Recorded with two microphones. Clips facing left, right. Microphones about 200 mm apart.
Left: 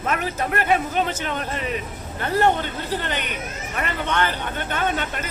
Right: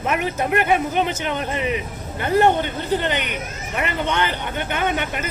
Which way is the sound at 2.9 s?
20° right (ahead or behind).